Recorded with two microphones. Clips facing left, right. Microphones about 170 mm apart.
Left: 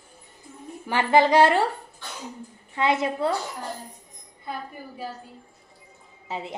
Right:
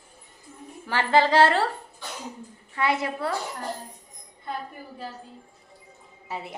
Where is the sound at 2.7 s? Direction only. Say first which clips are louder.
Left 2 dB; 20° left (ahead or behind).